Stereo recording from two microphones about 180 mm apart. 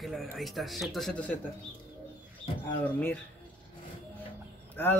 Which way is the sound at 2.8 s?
10° left (ahead or behind).